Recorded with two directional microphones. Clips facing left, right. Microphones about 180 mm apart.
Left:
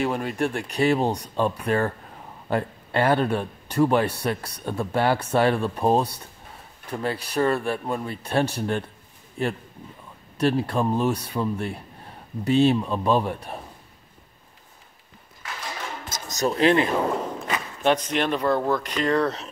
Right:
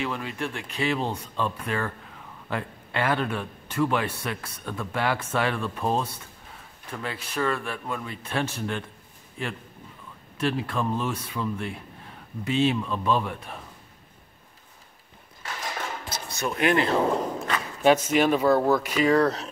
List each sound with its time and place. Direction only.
0.0 s speech: 45° left (ahead or behind)
16.1 s music: 40° left (ahead or behind)
17.2 s speech: centre (ahead or behind)